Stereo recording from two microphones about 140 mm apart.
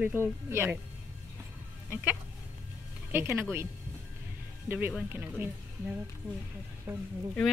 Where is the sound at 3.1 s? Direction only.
15° right (ahead or behind).